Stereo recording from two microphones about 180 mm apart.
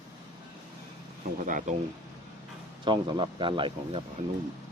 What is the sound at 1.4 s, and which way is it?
Speech, 45° right (ahead or behind).